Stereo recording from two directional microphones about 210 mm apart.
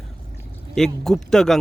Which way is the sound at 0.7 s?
Centre (ahead or behind).